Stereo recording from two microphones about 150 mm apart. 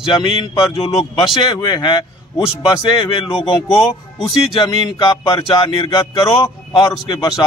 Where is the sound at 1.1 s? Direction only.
30° left (ahead or behind).